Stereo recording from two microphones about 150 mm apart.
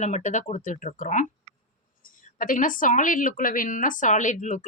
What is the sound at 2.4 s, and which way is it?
A woman's voice, 65° left (ahead or behind).